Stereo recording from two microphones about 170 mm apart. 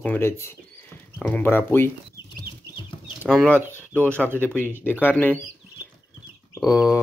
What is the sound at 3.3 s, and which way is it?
Speech, 5° left (ahead or behind).